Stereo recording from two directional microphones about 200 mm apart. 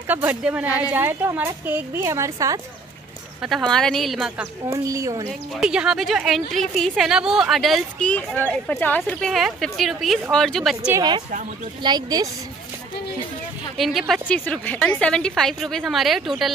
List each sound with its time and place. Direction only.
0.1 s a woman's voice: 10° right (ahead or behind)
3.4 s a woman's voice: centre (ahead or behind)
4.8 s a woman's voice: 15° right (ahead or behind)
5.6 s a woman's voice: 5° right (ahead or behind)
10.9 s speech: 20° right (ahead or behind)
13.7 s a woman's voice: centre (ahead or behind)